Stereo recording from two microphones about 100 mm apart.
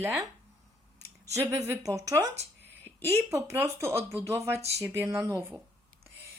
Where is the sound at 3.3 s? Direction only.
30° right (ahead or behind).